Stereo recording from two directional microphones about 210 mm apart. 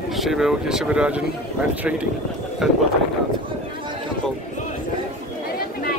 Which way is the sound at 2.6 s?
Centre (ahead or behind).